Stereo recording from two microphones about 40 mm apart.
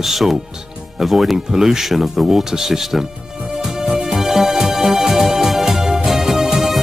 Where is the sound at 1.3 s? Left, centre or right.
Centre.